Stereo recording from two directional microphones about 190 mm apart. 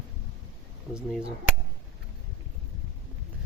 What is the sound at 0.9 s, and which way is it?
Speech, 5° right (ahead or behind).